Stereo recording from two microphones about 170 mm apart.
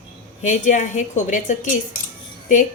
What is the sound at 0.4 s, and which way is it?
A woman's voice, 45° left (ahead or behind).